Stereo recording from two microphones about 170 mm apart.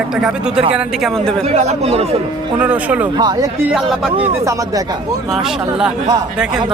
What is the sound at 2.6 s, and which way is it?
Speech, 10° right (ahead or behind).